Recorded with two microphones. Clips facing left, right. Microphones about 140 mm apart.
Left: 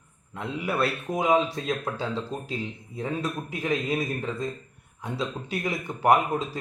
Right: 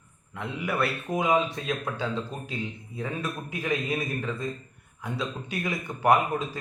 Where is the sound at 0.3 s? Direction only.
30° left (ahead or behind).